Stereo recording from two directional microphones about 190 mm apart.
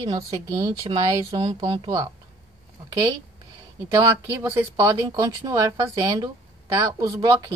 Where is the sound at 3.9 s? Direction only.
15° right (ahead or behind).